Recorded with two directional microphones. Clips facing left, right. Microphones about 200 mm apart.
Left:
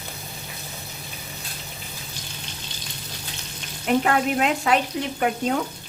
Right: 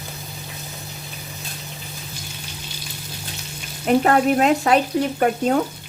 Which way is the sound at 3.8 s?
40° right (ahead or behind).